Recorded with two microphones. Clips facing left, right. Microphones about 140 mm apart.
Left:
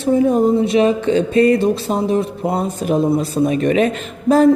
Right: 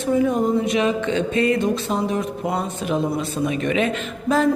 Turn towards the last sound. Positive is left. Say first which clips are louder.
# left 7 dB
turn(degrees=40)  # may be behind; listen again after turning